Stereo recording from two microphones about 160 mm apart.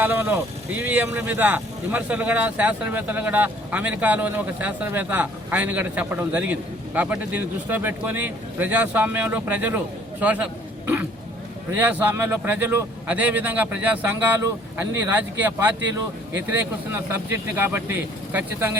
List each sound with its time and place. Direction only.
0.0 s speech: 15° right (ahead or behind)